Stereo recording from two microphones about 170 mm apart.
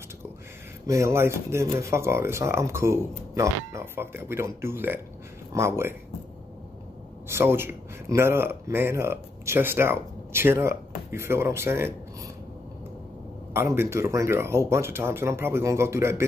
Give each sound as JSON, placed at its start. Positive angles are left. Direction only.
{"t": 0.8, "sound": "speech", "side_deg": -15}
{"t": 7.2, "sound": "speech", "side_deg": -15}
{"t": 13.5, "sound": "speech", "side_deg": -15}